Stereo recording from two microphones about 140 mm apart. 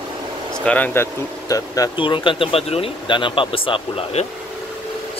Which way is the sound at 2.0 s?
35° left (ahead or behind).